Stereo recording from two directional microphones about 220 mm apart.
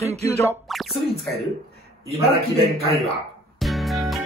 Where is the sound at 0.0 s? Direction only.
30° right (ahead or behind).